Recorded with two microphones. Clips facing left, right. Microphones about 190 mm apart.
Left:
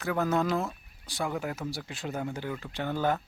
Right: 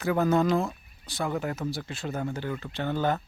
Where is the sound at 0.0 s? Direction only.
Centre (ahead or behind).